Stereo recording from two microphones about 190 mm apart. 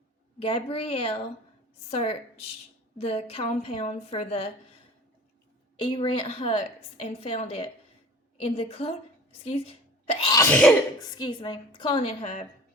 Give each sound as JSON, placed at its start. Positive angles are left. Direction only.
{"t": 0.3, "sound": "a woman's voice", "side_deg": 30}
{"t": 5.7, "sound": "a woman's voice", "side_deg": 25}
{"t": 11.0, "sound": "a woman's voice", "side_deg": 20}
{"t": 12.2, "sound": "a woman's voice", "side_deg": 40}